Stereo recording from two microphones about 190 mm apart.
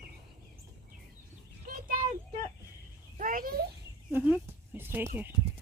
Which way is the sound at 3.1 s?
45° right (ahead or behind).